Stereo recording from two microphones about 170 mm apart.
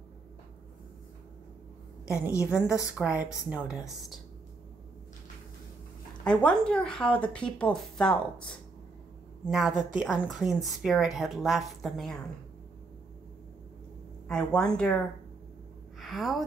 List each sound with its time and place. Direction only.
2.3 s speech: 15° left (ahead or behind)
3.0 s speech: 10° right (ahead or behind)
6.2 s speech: 5° left (ahead or behind)
14.2 s speech: 5° left (ahead or behind)
16.0 s a woman's voice: centre (ahead or behind)